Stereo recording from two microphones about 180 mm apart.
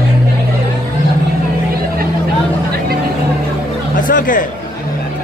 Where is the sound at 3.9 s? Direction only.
50° left (ahead or behind).